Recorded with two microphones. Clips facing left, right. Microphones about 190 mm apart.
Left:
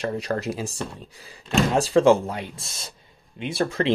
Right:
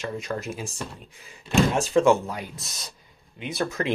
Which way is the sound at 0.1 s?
35° left (ahead or behind).